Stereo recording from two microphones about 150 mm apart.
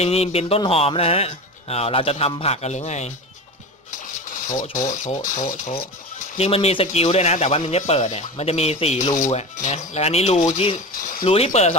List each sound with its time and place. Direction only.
0.0 s speech: 45° left (ahead or behind)
3.9 s speech: 60° left (ahead or behind)
6.3 s speech: 40° left (ahead or behind)
10.9 s mechanisms: 75° left (ahead or behind)
11.2 s speech: 40° left (ahead or behind)